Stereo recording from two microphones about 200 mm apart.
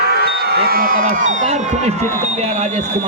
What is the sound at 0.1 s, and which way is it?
A man's voice, 50° right (ahead or behind).